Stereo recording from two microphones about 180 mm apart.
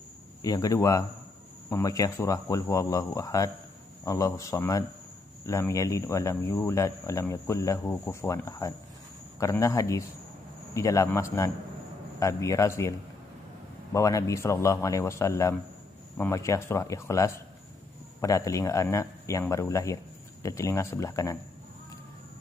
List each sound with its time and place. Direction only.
0.4 s speech: 20° left (ahead or behind)
13.9 s speech: 15° left (ahead or behind)